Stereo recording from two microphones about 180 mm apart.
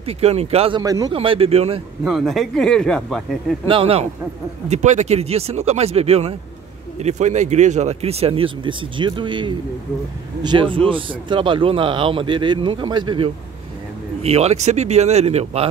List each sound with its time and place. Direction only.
0.0 s speech: 35° right (ahead or behind)
1.1 s speech: 30° right (ahead or behind)
2.0 s speech: centre (ahead or behind)
3.6 s a man's voice: 30° right (ahead or behind)
14.2 s speech: 35° right (ahead or behind)